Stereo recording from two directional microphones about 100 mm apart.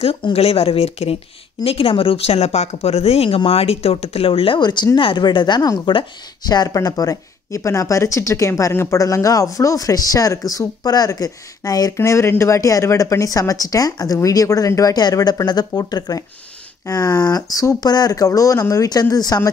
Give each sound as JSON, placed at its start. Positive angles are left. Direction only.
{"t": 0.0, "sound": "speech", "side_deg": 75}
{"t": 1.6, "sound": "speech", "side_deg": 70}
{"t": 4.6, "sound": "speech", "side_deg": 45}